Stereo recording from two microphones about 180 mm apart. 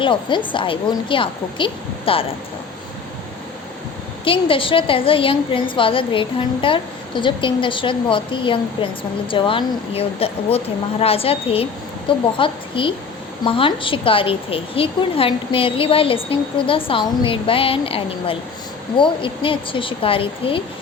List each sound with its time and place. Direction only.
0.0 s a woman's voice: 25° left (ahead or behind)
4.2 s a woman's voice: 30° left (ahead or behind)